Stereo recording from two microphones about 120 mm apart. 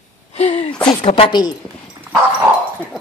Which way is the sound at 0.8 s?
45° left (ahead or behind).